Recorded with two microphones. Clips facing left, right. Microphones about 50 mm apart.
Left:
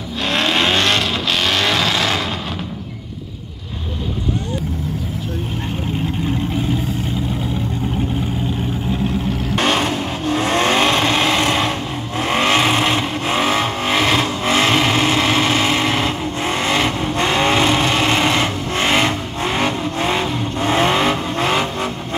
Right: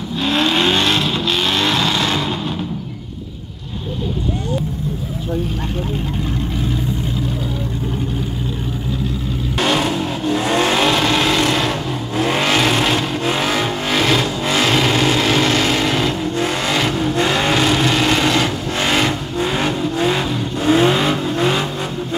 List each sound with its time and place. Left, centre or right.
0.2 s vehicle: left
9.6 s vehicle: left